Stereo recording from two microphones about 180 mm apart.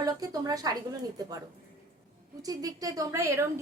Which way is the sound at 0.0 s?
20° right (ahead or behind).